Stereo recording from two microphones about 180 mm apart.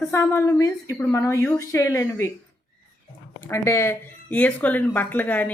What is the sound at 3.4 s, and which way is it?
Speech, 15° left (ahead or behind).